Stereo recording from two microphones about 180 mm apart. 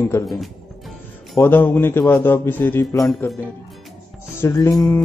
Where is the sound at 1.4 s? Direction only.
10° left (ahead or behind).